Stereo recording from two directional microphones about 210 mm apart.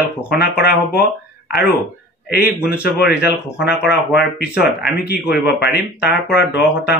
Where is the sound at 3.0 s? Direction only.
50° left (ahead or behind).